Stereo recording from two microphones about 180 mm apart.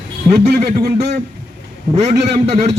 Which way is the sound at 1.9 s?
30° right (ahead or behind).